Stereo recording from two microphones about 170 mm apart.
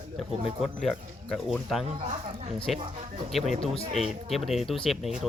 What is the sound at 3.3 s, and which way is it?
Speech, centre (ahead or behind).